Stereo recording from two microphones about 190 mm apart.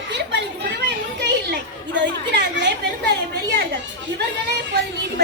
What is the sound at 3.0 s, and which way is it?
Chatter, 60° right (ahead or behind).